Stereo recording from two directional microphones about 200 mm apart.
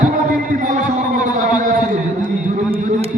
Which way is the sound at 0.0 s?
40° right (ahead or behind).